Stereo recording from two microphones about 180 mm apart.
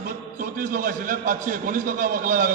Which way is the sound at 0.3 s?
50° right (ahead or behind).